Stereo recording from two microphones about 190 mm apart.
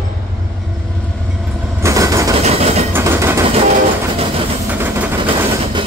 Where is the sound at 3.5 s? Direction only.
35° right (ahead or behind).